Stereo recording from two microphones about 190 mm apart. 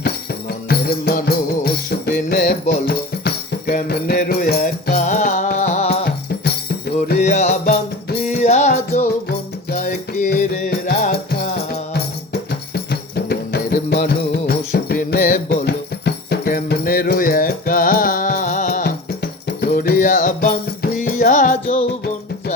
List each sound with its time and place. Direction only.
0.0 s music: 55° left (ahead or behind); by 5.9 s 35° left (ahead or behind)
5.9 s music: 60° left (ahead or behind)
7.2 s music: 35° left (ahead or behind)
9.9 s music: 50° left (ahead or behind)